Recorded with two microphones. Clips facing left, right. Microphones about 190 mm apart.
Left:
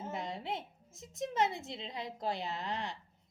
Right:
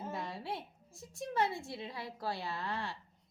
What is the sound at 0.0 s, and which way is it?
A woman's voice, 20° left (ahead or behind).